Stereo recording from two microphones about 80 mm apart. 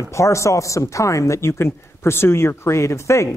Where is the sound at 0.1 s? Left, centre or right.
Left.